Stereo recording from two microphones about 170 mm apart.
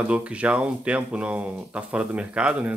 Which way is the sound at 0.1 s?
5° right (ahead or behind).